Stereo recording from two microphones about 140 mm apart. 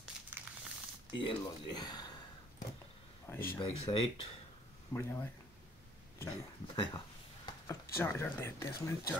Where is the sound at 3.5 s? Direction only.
40° left (ahead or behind).